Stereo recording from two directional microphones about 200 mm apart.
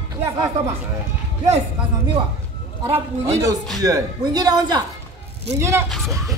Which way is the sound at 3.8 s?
20° right (ahead or behind).